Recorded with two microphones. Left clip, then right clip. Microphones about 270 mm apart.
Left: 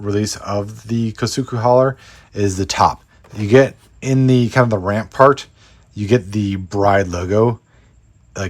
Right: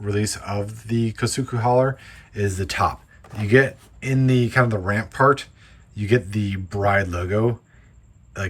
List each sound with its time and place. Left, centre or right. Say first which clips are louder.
0.0 s speech: left 5 dB; centre